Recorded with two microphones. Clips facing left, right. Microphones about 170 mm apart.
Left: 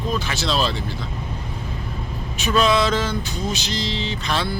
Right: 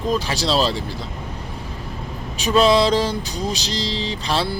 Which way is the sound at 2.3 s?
35° right (ahead or behind).